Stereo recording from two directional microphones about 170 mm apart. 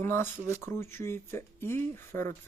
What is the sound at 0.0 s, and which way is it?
Speech, 15° left (ahead or behind).